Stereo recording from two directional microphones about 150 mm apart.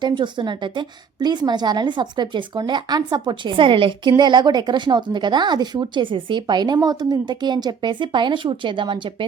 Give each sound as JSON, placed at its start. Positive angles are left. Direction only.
{"t": 0.0, "sound": "a woman's voice", "side_deg": -30}